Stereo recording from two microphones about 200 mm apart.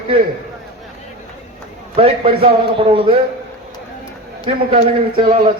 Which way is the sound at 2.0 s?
30° right (ahead or behind).